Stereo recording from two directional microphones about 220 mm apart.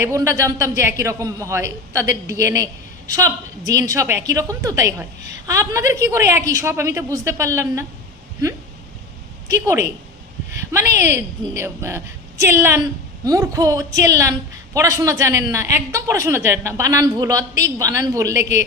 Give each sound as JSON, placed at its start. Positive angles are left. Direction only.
{"t": 0.0, "sound": "speech", "side_deg": -15}
{"t": 9.5, "sound": "speech", "side_deg": -10}